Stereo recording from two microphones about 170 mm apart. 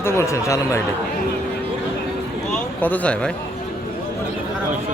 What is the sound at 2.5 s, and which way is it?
Speech, 10° left (ahead or behind).